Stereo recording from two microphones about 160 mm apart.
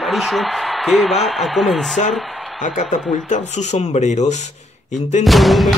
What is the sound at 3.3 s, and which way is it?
Speech, 45° left (ahead or behind).